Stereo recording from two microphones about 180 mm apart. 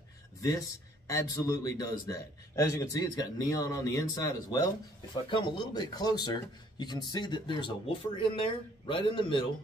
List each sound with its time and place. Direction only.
0.4 s speech: 20° left (ahead or behind)